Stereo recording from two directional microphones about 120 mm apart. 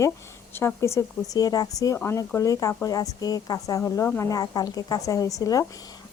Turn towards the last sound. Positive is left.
turn(degrees=30)  # may be behind; listen again after turning